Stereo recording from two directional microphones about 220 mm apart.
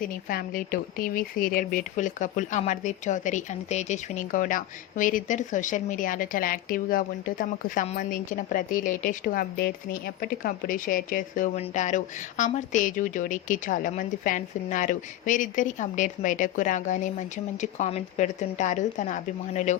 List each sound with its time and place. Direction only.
0.0 s speech: 40° left (ahead or behind)